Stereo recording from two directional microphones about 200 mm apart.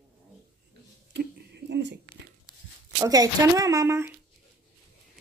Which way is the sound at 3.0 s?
15° right (ahead or behind).